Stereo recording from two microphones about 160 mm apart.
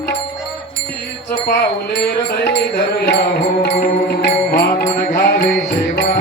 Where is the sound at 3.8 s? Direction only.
75° left (ahead or behind).